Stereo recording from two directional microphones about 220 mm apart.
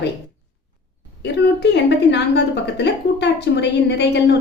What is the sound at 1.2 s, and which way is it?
A woman's voice, 50° left (ahead or behind).